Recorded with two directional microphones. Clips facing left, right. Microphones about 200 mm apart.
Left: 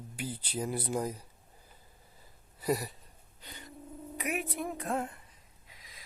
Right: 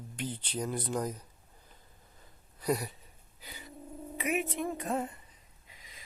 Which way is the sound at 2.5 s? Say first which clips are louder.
Even; 5° left (ahead or behind).